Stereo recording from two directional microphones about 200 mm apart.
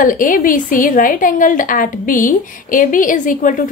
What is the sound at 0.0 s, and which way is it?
A woman's voice, 45° left (ahead or behind).